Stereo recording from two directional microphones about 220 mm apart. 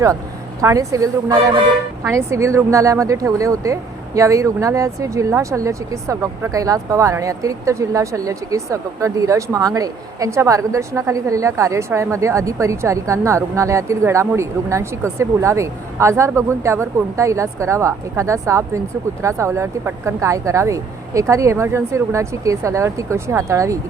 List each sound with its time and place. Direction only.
0.6 s speech: 15° right (ahead or behind)